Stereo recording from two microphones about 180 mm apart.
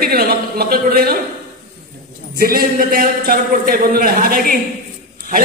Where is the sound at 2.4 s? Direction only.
55° right (ahead or behind).